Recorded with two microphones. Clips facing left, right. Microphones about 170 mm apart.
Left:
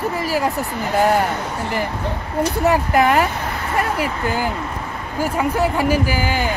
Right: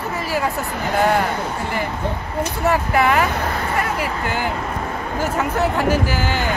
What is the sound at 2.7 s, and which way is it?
Speech, 40° left (ahead or behind).